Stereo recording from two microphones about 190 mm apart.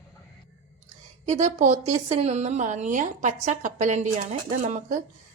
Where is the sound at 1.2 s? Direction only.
40° right (ahead or behind).